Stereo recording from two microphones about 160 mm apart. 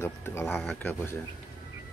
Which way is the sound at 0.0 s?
15° left (ahead or behind).